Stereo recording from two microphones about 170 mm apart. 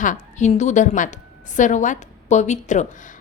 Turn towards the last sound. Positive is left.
turn(degrees=45)  # may be behind; listen again after turning